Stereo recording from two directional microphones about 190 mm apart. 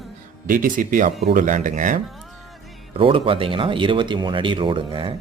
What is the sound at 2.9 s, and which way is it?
Speech, 30° right (ahead or behind).